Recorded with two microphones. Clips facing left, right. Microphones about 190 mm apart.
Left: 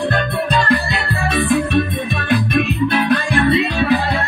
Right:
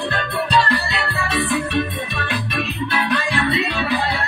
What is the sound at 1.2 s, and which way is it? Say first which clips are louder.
Music: left 6 dB; 50° left (ahead or behind).